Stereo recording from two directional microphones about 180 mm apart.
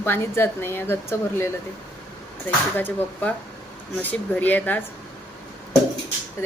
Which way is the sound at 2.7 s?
10° left (ahead or behind).